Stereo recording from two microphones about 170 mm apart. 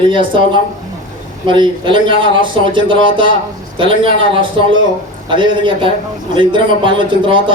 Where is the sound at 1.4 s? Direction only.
30° right (ahead or behind).